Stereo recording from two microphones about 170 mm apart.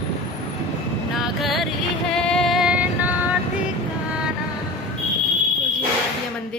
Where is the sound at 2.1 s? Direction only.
5° left (ahead or behind).